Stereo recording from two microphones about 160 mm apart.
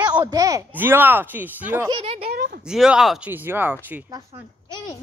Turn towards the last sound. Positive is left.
turn(degrees=-10)  # may be behind; listen again after turning